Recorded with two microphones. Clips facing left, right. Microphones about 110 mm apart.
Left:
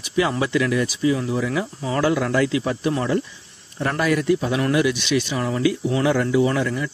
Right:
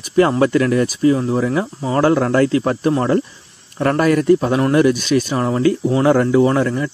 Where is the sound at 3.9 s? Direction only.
45° right (ahead or behind).